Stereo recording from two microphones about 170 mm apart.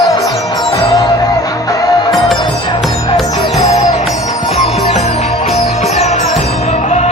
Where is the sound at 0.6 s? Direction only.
30° left (ahead or behind).